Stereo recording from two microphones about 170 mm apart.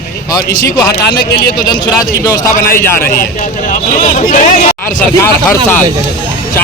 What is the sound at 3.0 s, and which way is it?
Speech, 60° left (ahead or behind).